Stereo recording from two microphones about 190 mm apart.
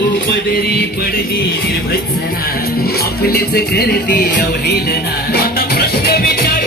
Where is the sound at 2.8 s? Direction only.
55° left (ahead or behind).